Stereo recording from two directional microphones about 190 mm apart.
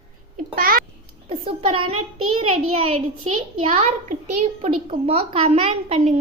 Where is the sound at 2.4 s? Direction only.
30° right (ahead or behind).